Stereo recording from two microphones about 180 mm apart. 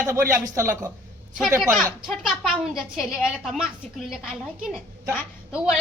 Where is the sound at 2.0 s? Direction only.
Centre (ahead or behind).